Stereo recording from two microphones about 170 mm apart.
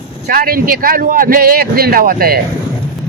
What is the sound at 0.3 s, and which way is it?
Speech, 60° right (ahead or behind).